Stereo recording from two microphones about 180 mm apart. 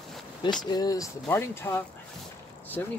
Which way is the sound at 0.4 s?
25° left (ahead or behind).